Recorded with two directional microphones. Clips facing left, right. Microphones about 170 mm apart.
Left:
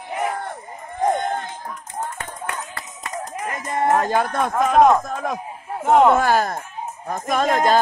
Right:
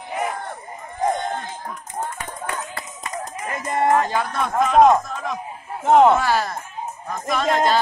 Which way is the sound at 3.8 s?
45° left (ahead or behind).